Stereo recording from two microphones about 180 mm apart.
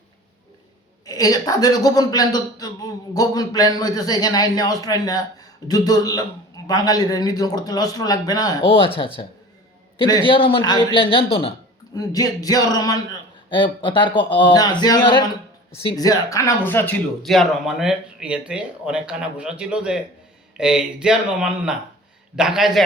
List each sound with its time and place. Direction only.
1.0 s speech: 20° left (ahead or behind)
11.9 s speech: 20° left (ahead or behind)
17.2 s speech: centre (ahead or behind)